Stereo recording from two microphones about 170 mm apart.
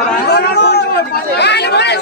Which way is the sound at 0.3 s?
75° left (ahead or behind).